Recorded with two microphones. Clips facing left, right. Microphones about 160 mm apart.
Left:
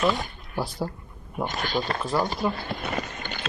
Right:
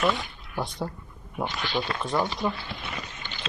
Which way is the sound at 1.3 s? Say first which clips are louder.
Left 2 dB; 45° left (ahead or behind).